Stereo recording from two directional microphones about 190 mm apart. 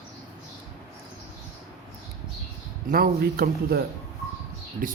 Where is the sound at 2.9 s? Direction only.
50° right (ahead or behind).